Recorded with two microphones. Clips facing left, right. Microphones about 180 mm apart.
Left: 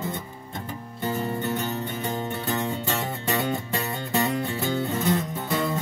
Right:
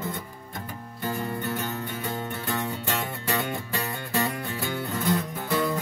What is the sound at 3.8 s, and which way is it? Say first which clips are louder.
Music: even; 20° left (ahead or behind).